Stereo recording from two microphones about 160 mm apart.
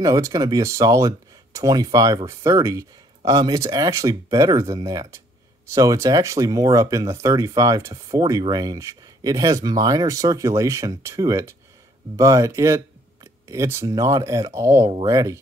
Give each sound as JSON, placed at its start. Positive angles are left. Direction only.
{"t": 0.0, "sound": "speech", "side_deg": -20}